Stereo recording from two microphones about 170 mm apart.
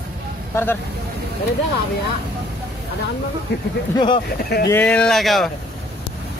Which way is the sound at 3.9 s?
25° left (ahead or behind).